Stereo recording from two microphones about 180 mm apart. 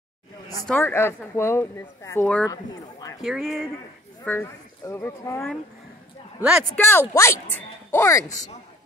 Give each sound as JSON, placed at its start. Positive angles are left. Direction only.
{"t": 0.7, "sound": "speech", "side_deg": 10}
{"t": 3.2, "sound": "speech", "side_deg": 0}
{"t": 4.2, "sound": "speech", "side_deg": 10}
{"t": 6.7, "sound": "speech", "side_deg": 15}